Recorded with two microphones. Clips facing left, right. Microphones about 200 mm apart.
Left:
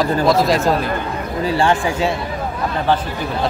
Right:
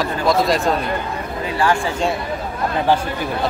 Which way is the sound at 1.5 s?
25° left (ahead or behind).